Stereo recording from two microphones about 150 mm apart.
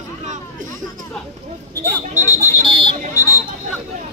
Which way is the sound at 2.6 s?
35° right (ahead or behind).